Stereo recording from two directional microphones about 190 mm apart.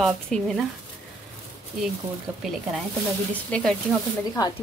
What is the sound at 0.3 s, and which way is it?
Speech, 5° left (ahead or behind).